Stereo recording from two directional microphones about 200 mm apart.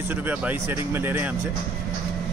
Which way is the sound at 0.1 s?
10° right (ahead or behind).